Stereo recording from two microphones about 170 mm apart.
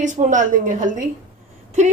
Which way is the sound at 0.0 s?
45° right (ahead or behind).